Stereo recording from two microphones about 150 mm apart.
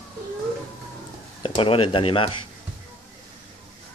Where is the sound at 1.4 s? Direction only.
40° left (ahead or behind).